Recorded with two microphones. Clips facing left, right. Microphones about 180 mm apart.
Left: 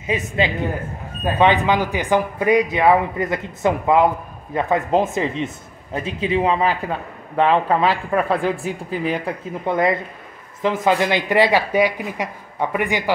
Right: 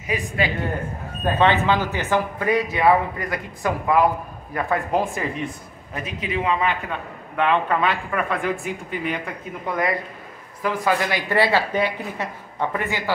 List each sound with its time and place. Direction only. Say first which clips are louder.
0.0 s a man's voice: left 3 dB; 20° left (ahead or behind)